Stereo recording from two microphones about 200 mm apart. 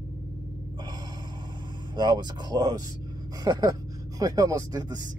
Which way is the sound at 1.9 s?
20° right (ahead or behind).